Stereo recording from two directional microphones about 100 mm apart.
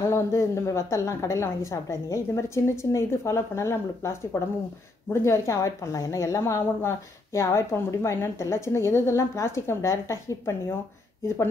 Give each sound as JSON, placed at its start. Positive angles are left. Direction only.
{"t": 0.0, "sound": "a woman's voice", "side_deg": 30}